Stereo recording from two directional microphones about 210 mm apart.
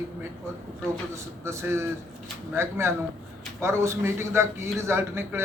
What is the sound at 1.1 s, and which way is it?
A man's voice, 15° right (ahead or behind).